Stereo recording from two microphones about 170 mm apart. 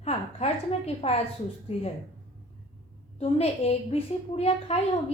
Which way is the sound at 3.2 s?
35° left (ahead or behind).